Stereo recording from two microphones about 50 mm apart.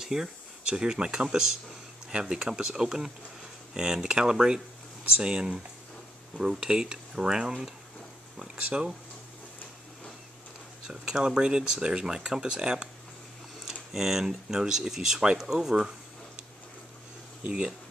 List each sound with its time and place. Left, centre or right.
0.0 s speech: centre
8.6 s speech: right
10.9 s speech: centre